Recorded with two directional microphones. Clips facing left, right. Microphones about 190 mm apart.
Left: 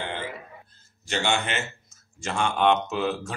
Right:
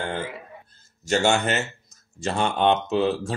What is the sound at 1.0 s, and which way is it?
A man's voice, 45° right (ahead or behind).